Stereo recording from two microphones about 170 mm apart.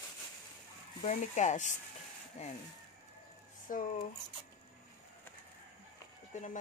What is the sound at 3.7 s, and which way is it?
Speech, 50° left (ahead or behind).